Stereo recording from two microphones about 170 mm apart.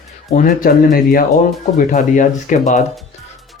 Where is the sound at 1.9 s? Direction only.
50° left (ahead or behind).